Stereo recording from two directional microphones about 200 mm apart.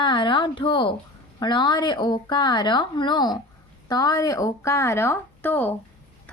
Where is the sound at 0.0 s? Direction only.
25° left (ahead or behind).